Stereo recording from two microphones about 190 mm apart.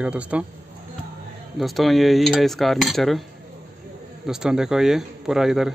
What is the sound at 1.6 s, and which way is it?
Speech, centre (ahead or behind).